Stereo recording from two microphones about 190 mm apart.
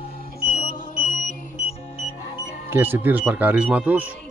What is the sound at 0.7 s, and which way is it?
Music, 45° left (ahead or behind).